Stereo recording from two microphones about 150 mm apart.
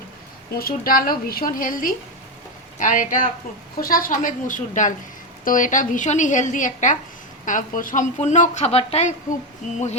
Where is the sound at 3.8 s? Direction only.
70° left (ahead or behind).